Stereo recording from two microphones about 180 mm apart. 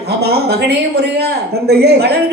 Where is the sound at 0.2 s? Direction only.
65° right (ahead or behind).